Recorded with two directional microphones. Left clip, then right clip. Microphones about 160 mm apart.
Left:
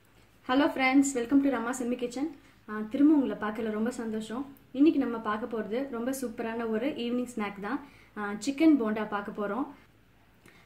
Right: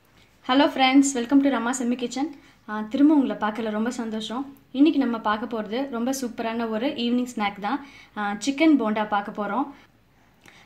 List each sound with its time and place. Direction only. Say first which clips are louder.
0.5 s speech: right 6 dB; 35° right (ahead or behind)